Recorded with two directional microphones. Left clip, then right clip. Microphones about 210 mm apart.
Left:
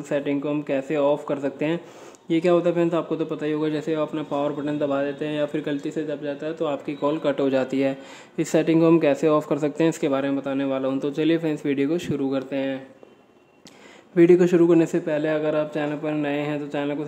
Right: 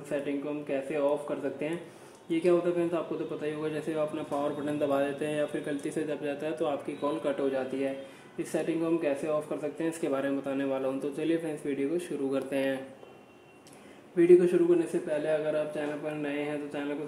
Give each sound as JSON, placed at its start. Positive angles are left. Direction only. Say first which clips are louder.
{"t": 0.1, "sound": "speech", "louder": "left 8 dB", "side_deg": 30}
{"t": 12.3, "sound": "speech", "louder": "left 1 dB", "side_deg": 15}
{"t": 14.1, "sound": "a man's voice", "louder": "left 5 dB", "side_deg": 35}